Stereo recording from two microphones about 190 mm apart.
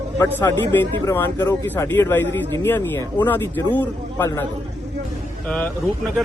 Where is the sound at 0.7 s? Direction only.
10° left (ahead or behind).